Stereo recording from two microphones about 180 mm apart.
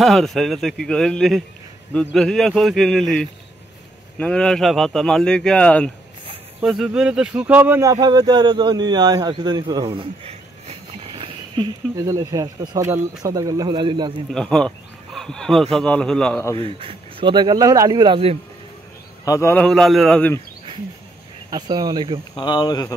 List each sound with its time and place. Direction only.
0.0 s speech: centre (ahead or behind); by 14.1 s 25° right (ahead or behind)
14.3 s speech: 5° left (ahead or behind)
16.5 s speech: 30° right (ahead or behind)
19.2 s a man's voice: 15° left (ahead or behind)
21.5 s speech: 20° right (ahead or behind)
22.4 s speech: 25° left (ahead or behind)